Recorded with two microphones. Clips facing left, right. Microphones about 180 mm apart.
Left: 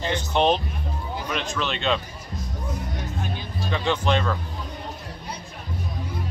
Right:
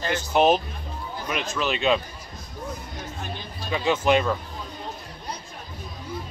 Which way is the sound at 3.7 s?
5° right (ahead or behind).